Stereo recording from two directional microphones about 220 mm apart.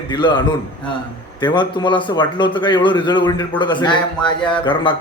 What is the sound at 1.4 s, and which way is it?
A man's voice, 20° left (ahead or behind).